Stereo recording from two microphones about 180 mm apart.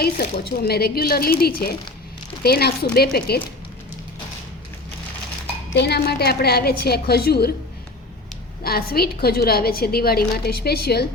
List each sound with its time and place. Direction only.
0.0 s a woman's voice: 60° left (ahead or behind)
5.7 s a woman's voice: 65° left (ahead or behind)
8.6 s a woman's voice: 55° left (ahead or behind)